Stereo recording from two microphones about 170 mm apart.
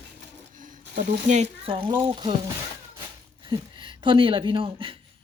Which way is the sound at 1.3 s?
35° right (ahead or behind).